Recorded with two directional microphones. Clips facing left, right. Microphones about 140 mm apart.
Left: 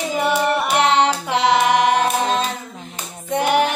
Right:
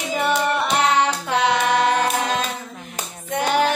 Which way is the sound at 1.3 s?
10° left (ahead or behind).